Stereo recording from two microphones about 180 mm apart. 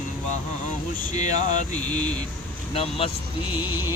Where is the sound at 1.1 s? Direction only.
40° left (ahead or behind).